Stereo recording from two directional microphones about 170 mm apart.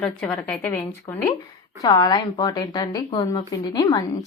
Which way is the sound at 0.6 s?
15° left (ahead or behind).